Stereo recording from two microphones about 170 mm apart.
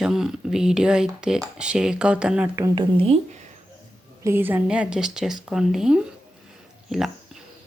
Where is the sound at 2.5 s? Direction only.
25° right (ahead or behind).